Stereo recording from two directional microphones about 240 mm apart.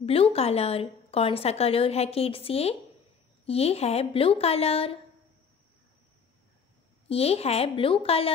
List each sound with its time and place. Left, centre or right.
0.0 s a woman's voice: left
7.1 s a woman's voice: left